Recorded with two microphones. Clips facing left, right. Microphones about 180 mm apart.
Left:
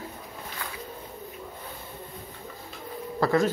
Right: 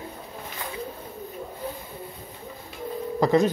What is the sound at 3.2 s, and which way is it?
Telephone, 20° right (ahead or behind).